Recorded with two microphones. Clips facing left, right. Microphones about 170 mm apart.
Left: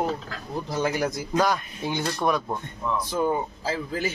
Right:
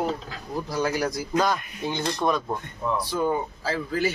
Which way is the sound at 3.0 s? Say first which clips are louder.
Left 1 dB; 15° left (ahead or behind).